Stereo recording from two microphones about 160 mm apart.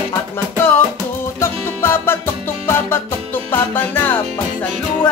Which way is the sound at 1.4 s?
15° left (ahead or behind).